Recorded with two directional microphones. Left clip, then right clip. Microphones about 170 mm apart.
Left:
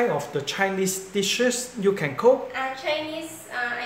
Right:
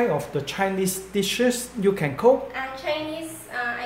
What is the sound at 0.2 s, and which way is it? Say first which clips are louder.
Speech: even; 10° right (ahead or behind).